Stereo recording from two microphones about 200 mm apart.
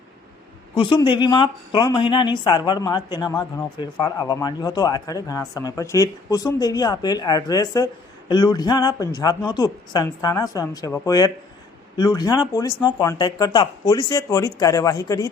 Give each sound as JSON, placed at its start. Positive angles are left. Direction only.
{"t": 0.8, "sound": "a woman's voice", "side_deg": 25}